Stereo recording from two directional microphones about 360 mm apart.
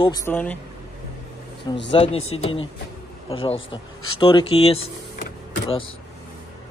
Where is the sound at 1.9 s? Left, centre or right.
Centre.